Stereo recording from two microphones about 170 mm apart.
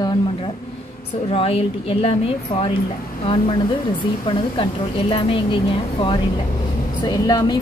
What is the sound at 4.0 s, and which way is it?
A woman's voice, 30° left (ahead or behind).